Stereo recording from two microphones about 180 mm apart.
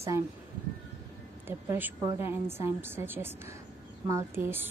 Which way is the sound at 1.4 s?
10° right (ahead or behind).